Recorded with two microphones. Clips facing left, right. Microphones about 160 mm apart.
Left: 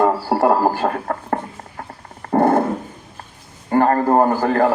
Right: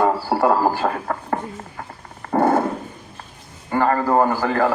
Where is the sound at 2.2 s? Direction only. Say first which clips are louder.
Left 2 dB; 50° left (ahead or behind).